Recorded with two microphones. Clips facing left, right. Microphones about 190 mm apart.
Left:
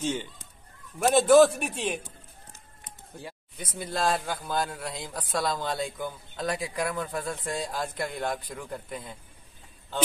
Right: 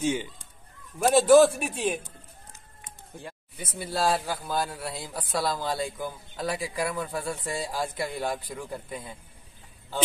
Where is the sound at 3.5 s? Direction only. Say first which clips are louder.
Right 1 dB; 5° right (ahead or behind).